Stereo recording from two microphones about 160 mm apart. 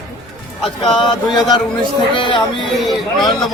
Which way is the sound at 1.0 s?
30° left (ahead or behind).